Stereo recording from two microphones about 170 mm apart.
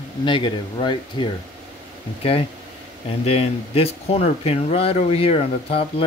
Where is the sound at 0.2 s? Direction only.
30° left (ahead or behind).